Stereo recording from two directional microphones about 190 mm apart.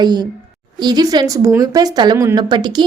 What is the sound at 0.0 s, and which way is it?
A woman's voice, 20° right (ahead or behind).